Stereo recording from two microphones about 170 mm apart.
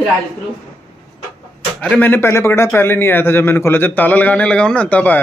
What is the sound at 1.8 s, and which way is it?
A man's voice, 10° left (ahead or behind).